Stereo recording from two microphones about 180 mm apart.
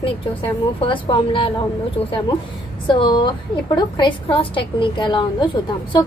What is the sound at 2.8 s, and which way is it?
A woman's voice, 25° left (ahead or behind).